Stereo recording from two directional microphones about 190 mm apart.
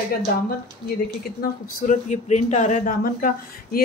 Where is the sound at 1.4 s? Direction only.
45° left (ahead or behind).